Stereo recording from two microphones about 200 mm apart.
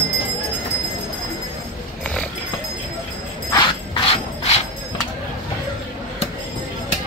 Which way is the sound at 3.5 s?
25° left (ahead or behind).